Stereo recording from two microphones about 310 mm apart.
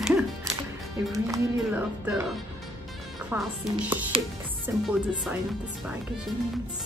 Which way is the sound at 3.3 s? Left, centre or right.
Centre.